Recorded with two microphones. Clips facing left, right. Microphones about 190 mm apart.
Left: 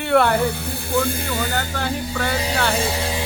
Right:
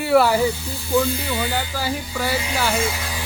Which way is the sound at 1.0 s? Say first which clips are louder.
Even; 50° left (ahead or behind).